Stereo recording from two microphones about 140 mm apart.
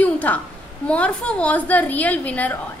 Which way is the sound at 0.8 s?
10° left (ahead or behind).